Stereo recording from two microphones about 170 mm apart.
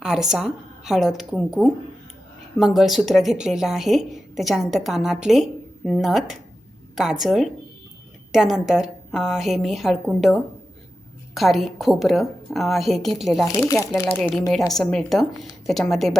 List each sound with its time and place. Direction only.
0.0 s a woman's voice: 5° right (ahead or behind)
13.4 s speech: 15° left (ahead or behind)
14.2 s a woman's voice: centre (ahead or behind)